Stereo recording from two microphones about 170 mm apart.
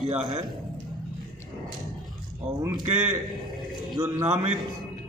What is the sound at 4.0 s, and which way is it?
Speech, 15° right (ahead or behind).